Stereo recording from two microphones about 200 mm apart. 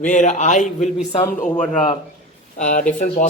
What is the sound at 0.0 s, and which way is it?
Speech, 40° left (ahead or behind).